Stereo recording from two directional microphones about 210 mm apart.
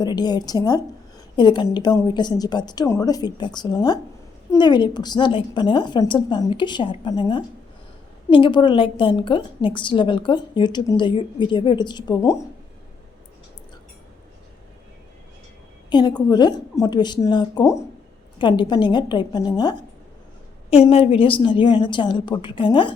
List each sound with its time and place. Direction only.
0.0 s a woman's voice: 20° left (ahead or behind)
15.9 s a woman's voice: 20° left (ahead or behind)